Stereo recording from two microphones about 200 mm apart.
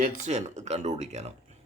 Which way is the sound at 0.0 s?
35° right (ahead or behind).